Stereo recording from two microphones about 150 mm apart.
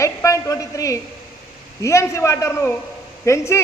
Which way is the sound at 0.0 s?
20° left (ahead or behind).